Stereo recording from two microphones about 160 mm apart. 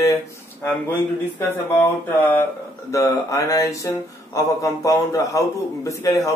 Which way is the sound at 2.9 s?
20° left (ahead or behind).